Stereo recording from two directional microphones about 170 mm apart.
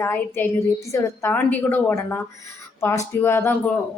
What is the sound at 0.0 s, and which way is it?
Speech, 15° left (ahead or behind).